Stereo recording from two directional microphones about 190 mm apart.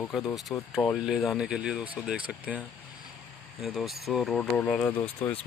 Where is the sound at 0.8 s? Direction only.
Centre (ahead or behind).